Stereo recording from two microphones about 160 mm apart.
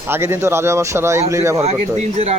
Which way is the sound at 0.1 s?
15° right (ahead or behind).